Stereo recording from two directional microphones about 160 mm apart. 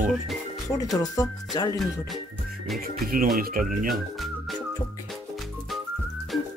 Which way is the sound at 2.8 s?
65° right (ahead or behind).